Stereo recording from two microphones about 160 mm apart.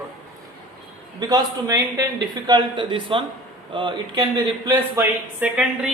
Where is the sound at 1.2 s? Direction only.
25° right (ahead or behind).